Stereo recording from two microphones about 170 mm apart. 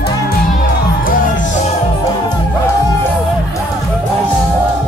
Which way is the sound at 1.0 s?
50° left (ahead or behind).